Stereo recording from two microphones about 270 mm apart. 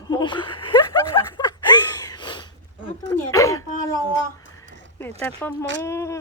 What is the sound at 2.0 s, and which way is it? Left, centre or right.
Wheeze, centre.